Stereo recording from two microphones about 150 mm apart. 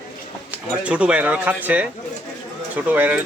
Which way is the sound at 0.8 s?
5° right (ahead or behind).